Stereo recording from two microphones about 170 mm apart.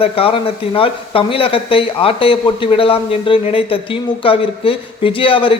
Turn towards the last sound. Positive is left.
turn(degrees=30)  # may be behind; listen again after turning